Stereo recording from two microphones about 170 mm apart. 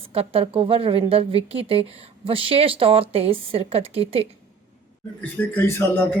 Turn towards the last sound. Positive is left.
turn(degrees=15)  # may be behind; listen again after turning